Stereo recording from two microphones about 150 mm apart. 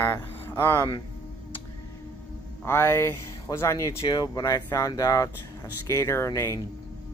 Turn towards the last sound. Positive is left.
turn(degrees=20)  # may be behind; listen again after turning